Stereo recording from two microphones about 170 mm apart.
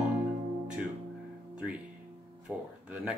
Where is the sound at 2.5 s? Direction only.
5° right (ahead or behind).